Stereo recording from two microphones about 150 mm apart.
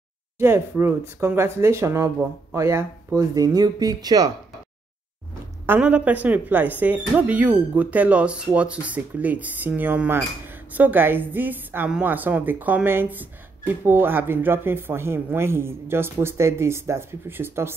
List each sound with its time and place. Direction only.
0.4 s speech: 15° right (ahead or behind)
5.7 s speech: 10° right (ahead or behind)